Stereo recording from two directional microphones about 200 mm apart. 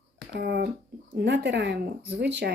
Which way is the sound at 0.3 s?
55° right (ahead or behind).